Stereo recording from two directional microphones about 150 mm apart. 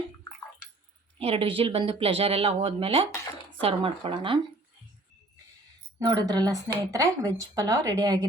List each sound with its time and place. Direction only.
1.2 s speech: 35° right (ahead or behind)
6.1 s speech: 25° right (ahead or behind)